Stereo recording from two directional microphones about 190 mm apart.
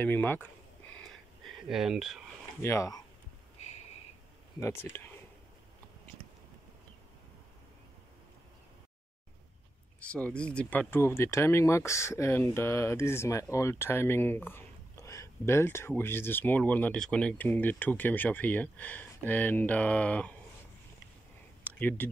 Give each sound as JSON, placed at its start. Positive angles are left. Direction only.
{"t": 0.0, "sound": "speech", "side_deg": 10}
{"t": 0.9, "sound": "a sound", "side_deg": 0}
{"t": 2.6, "sound": "speech", "side_deg": 15}
{"t": 4.6, "sound": "speech", "side_deg": 15}
{"t": 10.0, "sound": "speech", "side_deg": 5}
{"t": 21.6, "sound": "speech", "side_deg": 10}